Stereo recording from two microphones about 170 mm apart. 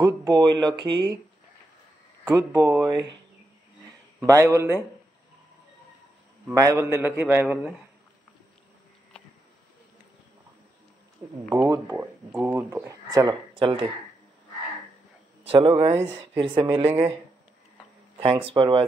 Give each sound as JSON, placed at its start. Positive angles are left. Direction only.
{"t": 0.0, "sound": "speech", "side_deg": -20}
{"t": 2.2, "sound": "speech", "side_deg": -20}
{"t": 4.3, "sound": "a man's voice", "side_deg": -15}
{"t": 6.4, "sound": "a man's voice", "side_deg": -20}
{"t": 11.6, "sound": "speech", "side_deg": -15}
{"t": 15.4, "sound": "speech", "side_deg": -35}
{"t": 18.2, "sound": "speech", "side_deg": -30}